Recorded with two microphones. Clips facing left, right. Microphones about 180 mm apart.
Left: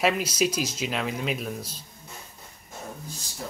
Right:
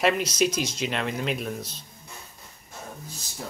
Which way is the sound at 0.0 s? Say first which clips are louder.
Right 1 dB; 5° left (ahead or behind).